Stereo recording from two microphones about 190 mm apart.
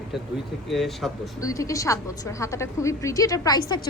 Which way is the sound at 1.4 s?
15° left (ahead or behind).